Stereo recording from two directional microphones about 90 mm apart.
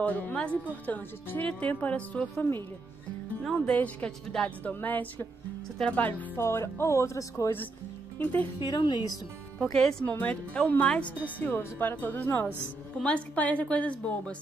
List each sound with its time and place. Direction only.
0.0 s a woman's voice: 15° left (ahead or behind)
4.3 s a woman's voice: 5° left (ahead or behind)
4.7 s a woman's voice: 20° left (ahead or behind)
6.4 s speech: 30° left (ahead or behind)
8.2 s speech: 20° left (ahead or behind)
8.5 s a woman's voice: 55° left (ahead or behind)
9.6 s a woman's voice: 10° left (ahead or behind)